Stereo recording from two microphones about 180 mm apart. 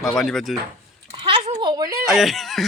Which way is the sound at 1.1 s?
30° right (ahead or behind).